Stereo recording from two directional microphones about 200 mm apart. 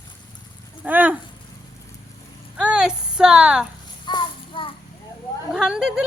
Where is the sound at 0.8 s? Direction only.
10° right (ahead or behind).